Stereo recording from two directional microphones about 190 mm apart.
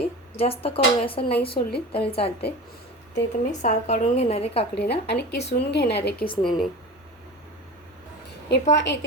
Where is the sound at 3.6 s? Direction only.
40° left (ahead or behind).